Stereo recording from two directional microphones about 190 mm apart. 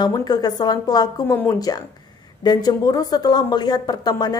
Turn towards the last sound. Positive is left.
turn(degrees=20)  # may be behind; listen again after turning